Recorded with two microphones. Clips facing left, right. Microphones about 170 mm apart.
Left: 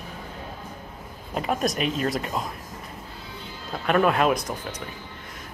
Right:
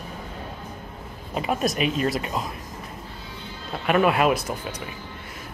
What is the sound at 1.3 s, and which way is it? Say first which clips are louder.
Speech: right 1 dB; 5° right (ahead or behind).